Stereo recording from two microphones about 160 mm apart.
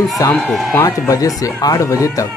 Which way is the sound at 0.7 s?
15° left (ahead or behind).